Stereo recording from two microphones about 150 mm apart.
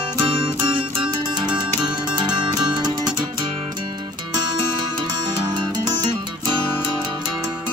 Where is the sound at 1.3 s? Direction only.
30° right (ahead or behind).